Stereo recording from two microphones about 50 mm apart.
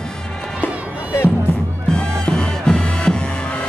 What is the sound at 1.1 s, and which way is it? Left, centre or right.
Music, left.